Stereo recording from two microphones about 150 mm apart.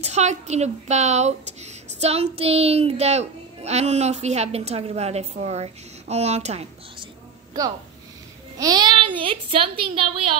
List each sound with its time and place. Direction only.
0.0 s speech: 50° right (ahead or behind)
8.5 s a woman's voice: 25° right (ahead or behind)